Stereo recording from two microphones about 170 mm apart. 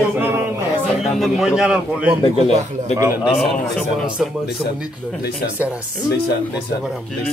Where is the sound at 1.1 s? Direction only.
Centre (ahead or behind).